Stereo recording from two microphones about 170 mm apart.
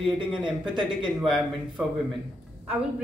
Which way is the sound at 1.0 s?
Centre (ahead or behind).